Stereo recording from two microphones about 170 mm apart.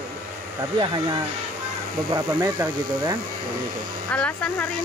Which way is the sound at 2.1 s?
20° right (ahead or behind).